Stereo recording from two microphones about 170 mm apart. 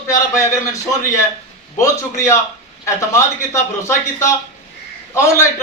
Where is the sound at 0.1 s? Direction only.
20° left (ahead or behind).